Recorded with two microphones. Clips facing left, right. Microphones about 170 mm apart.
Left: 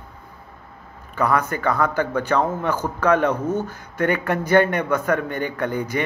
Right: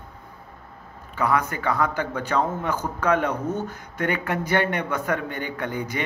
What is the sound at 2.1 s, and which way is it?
Speech, 15° right (ahead or behind).